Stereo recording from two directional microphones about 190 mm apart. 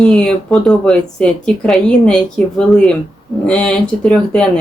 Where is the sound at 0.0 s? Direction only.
5° left (ahead or behind).